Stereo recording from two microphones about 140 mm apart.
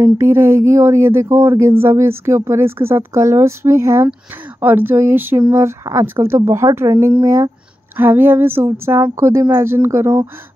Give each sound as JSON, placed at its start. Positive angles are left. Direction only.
{"t": 0.0, "sound": "speech", "side_deg": -20}